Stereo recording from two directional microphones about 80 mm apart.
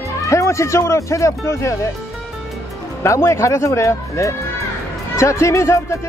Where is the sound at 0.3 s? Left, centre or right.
Left.